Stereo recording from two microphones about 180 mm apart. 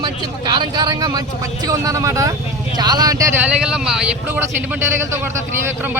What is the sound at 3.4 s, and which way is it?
A man's voice, 5° right (ahead or behind).